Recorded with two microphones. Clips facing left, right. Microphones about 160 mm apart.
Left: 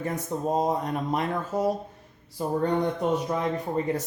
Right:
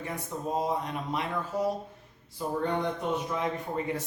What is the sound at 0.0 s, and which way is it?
Speech, 45° left (ahead or behind).